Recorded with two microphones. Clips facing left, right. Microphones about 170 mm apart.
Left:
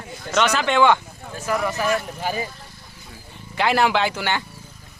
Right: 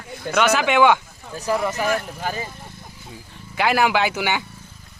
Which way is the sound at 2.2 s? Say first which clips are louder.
Left 2 dB; 10° left (ahead or behind).